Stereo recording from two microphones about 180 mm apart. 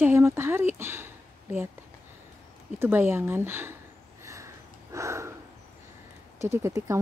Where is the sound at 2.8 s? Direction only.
10° right (ahead or behind).